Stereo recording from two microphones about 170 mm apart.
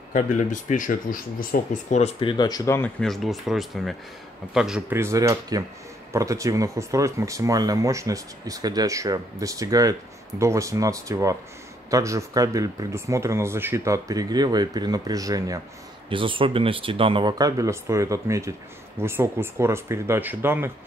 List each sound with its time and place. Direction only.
0.1 s speech: 45° left (ahead or behind); by 2.9 s 15° left (ahead or behind)
3.0 s speech: centre (ahead or behind)